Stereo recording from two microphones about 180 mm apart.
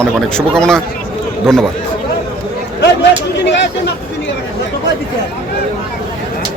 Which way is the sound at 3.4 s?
75° left (ahead or behind).